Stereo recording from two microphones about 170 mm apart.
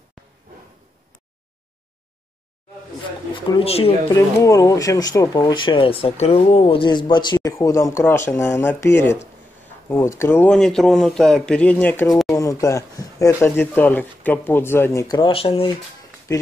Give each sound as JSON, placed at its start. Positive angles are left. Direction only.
{"t": 3.3, "sound": "speech", "side_deg": 30}
{"t": 4.1, "sound": "speech", "side_deg": 20}